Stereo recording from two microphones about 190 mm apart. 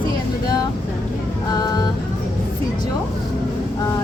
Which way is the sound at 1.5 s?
20° left (ahead or behind).